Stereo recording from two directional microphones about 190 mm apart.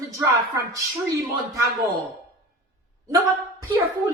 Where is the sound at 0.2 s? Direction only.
15° right (ahead or behind).